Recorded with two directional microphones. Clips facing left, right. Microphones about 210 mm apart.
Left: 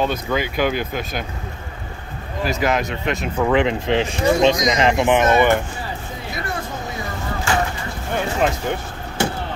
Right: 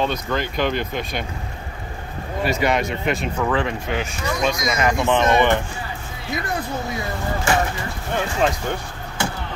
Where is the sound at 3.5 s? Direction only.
20° left (ahead or behind).